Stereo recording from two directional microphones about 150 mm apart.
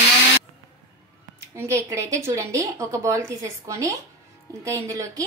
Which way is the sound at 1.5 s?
20° right (ahead or behind).